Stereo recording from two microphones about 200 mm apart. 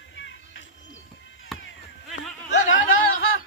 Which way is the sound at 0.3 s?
65° left (ahead or behind).